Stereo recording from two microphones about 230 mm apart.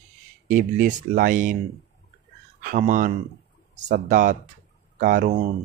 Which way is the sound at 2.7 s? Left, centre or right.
Right.